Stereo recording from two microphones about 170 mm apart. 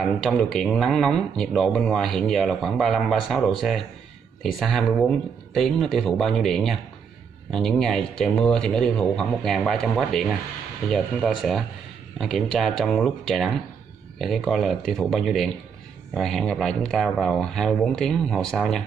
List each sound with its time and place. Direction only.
0.0 s speech: centre (ahead or behind)